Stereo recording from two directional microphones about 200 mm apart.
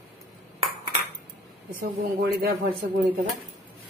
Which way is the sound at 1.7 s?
50° right (ahead or behind).